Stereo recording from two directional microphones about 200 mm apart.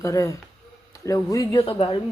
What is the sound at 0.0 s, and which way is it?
A woman's voice, 15° left (ahead or behind).